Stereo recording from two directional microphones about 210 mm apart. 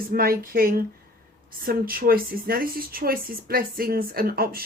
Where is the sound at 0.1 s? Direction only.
45° right (ahead or behind).